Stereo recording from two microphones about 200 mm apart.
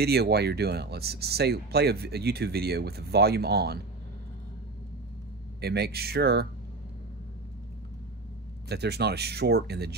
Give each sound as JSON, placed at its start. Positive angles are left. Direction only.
{"t": 0.0, "sound": "speech", "side_deg": -55}
{"t": 5.6, "sound": "speech", "side_deg": -55}
{"t": 8.6, "sound": "speech", "side_deg": -55}